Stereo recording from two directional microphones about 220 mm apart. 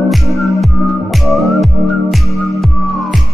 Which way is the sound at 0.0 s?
Centre (ahead or behind).